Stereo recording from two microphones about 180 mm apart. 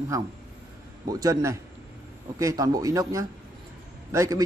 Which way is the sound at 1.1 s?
20° right (ahead or behind).